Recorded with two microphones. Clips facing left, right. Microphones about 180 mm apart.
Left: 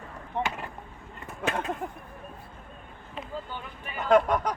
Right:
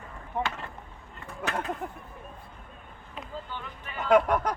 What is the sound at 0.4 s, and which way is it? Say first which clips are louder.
Vehicle: left 1 dB; 15° left (ahead or behind).